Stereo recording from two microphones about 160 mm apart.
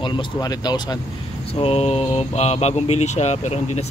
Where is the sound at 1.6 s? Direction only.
40° left (ahead or behind).